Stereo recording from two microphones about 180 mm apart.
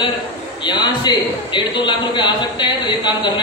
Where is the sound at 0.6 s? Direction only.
25° left (ahead or behind).